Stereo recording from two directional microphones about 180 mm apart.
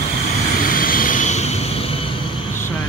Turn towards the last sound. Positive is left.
turn(degrees=35)  # may be behind; listen again after turning